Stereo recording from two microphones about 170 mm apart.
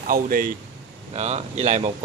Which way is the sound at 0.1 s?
55° right (ahead or behind).